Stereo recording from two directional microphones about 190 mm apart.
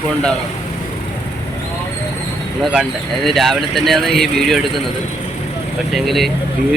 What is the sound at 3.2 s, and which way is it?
Speech, centre (ahead or behind).